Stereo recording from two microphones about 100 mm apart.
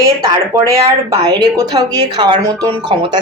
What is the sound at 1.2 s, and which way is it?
Speech, 40° right (ahead or behind).